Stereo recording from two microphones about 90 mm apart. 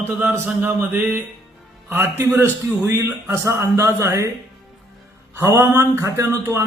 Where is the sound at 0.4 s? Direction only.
20° right (ahead or behind).